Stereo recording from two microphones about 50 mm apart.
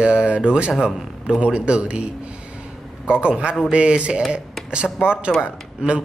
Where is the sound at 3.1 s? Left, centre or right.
Right.